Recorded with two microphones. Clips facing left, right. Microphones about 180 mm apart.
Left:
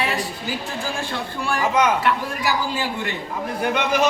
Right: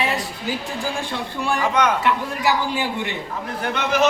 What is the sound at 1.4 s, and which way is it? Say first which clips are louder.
Speech: right 2 dB; 20° right (ahead or behind).